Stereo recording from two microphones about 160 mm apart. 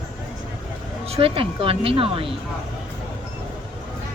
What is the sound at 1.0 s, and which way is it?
Speech, 40° right (ahead or behind).